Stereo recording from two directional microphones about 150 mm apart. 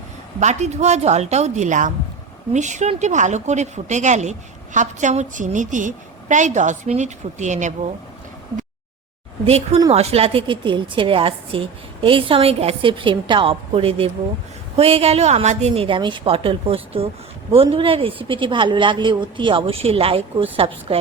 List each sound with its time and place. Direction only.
0.3 s speech: 50° right (ahead or behind)
9.5 s a woman's voice: 45° right (ahead or behind)